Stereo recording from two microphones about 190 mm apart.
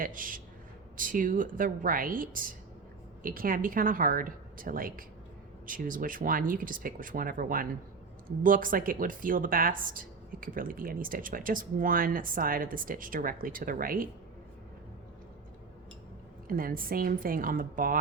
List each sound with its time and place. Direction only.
0.0 s speech: 45° right (ahead or behind)
16.5 s speech: 50° right (ahead or behind)